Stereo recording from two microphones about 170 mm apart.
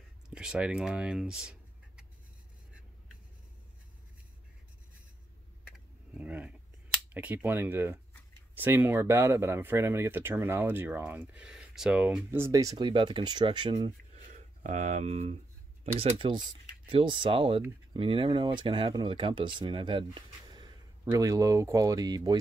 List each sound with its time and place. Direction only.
0.3 s speech: 5° right (ahead or behind)
6.1 s a sound: 10° right (ahead or behind)
7.2 s speech: 10° right (ahead or behind); by 13.9 s 25° right (ahead or behind)
14.3 s speech: 45° right (ahead or behind); by 22.4 s 25° right (ahead or behind)